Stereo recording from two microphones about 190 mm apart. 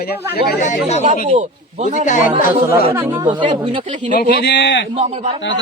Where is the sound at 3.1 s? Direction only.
25° right (ahead or behind).